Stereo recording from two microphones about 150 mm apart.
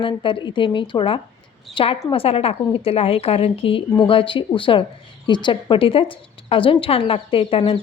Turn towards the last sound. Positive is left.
turn(degrees=40)  # may be behind; listen again after turning